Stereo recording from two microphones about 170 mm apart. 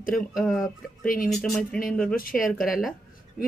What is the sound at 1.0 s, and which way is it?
Speech, 55° left (ahead or behind).